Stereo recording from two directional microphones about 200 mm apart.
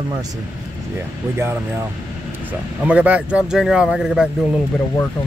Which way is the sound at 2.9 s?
5° right (ahead or behind).